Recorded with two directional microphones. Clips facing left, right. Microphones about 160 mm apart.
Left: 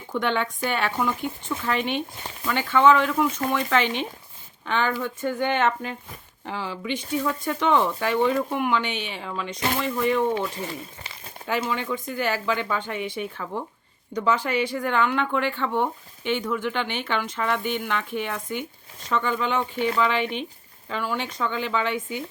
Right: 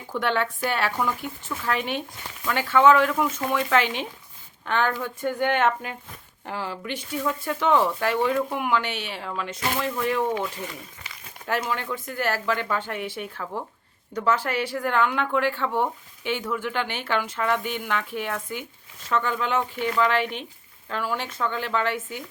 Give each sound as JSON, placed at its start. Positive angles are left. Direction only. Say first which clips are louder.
{"t": 0.1, "sound": "speech", "louder": "even", "side_deg": -5}
{"t": 10.3, "sound": "speech", "louder": "left 2 dB", "side_deg": 30}
{"t": 11.4, "sound": "speech", "louder": "left 1 dB", "side_deg": 0}